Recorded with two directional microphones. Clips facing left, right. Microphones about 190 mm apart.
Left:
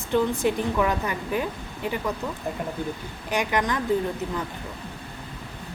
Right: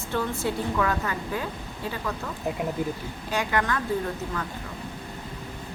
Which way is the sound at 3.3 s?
15° left (ahead or behind).